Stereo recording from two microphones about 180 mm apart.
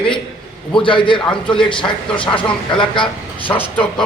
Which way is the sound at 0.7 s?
30° left (ahead or behind).